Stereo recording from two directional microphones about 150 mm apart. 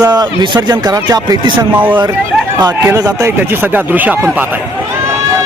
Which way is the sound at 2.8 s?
20° right (ahead or behind).